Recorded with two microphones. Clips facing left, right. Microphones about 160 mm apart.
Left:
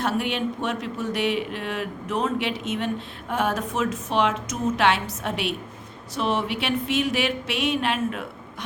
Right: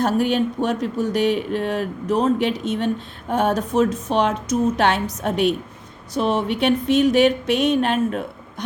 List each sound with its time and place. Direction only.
0.0 s speech: 40° right (ahead or behind)